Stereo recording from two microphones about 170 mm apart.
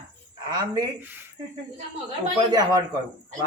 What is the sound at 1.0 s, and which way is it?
Speech, 10° right (ahead or behind).